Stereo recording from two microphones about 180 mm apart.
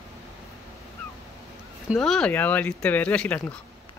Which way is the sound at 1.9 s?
Centre (ahead or behind).